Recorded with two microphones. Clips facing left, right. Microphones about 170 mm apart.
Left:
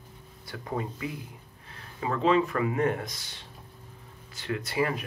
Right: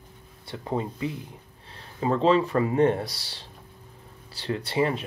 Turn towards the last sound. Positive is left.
turn(degrees=-25)  # may be behind; listen again after turning